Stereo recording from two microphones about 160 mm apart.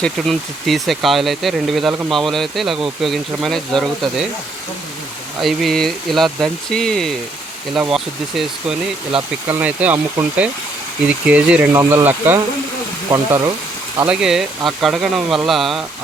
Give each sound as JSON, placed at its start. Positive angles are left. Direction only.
{"t": 0.0, "sound": "speech", "side_deg": 0}
{"t": 5.4, "sound": "speech", "side_deg": 0}
{"t": 14.1, "sound": "speech", "side_deg": -5}